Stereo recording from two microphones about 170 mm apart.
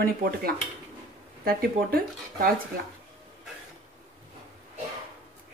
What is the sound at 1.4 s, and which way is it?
Speech, 60° right (ahead or behind).